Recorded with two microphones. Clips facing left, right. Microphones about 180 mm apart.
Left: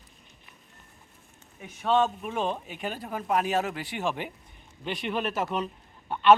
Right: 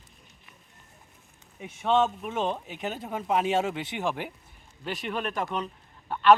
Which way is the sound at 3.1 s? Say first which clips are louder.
Even; centre (ahead or behind).